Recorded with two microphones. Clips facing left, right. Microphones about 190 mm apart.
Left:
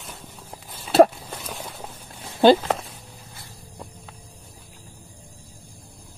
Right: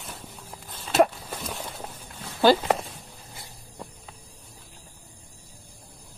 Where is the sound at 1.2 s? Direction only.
Centre (ahead or behind).